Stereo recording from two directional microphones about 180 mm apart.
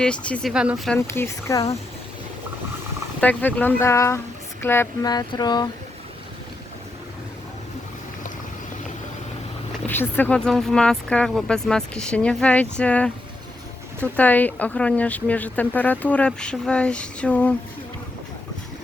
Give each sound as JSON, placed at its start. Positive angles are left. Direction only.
{"t": 0.0, "sound": "speech", "side_deg": 5}
{"t": 0.5, "sound": "speech", "side_deg": -5}
{"t": 0.9, "sound": "speech", "side_deg": 15}
{"t": 3.2, "sound": "speech", "side_deg": 10}
{"t": 4.6, "sound": "a sound", "side_deg": 10}
{"t": 9.8, "sound": "speech", "side_deg": 10}